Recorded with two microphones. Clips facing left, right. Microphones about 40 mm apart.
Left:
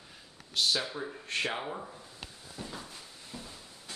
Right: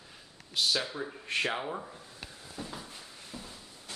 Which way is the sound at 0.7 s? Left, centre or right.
Centre.